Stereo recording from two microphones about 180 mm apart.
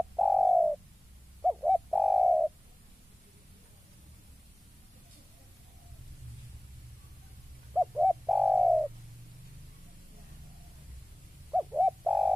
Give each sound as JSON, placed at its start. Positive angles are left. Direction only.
{"t": 0.2, "sound": "bird", "side_deg": 0}
{"t": 7.7, "sound": "bird", "side_deg": -5}
{"t": 11.5, "sound": "bird", "side_deg": -5}